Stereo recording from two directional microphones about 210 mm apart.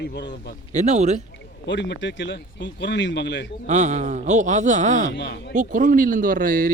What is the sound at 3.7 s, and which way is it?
Speech, 35° right (ahead or behind).